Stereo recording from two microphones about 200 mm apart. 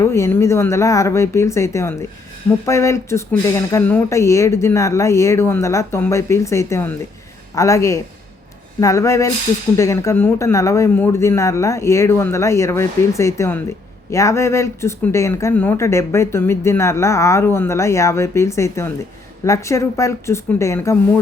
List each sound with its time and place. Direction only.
0.0 s speech: 15° left (ahead or behind)